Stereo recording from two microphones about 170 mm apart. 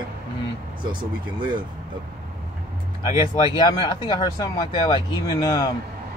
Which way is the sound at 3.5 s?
25° left (ahead or behind).